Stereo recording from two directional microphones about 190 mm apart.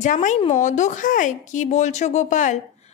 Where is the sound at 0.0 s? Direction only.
40° left (ahead or behind).